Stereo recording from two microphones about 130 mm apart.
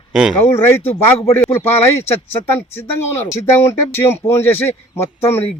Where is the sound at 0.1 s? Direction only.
5° right (ahead or behind).